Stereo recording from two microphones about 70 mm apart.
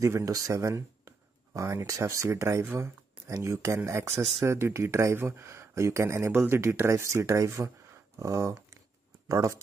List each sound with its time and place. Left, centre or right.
0.0 s speech: right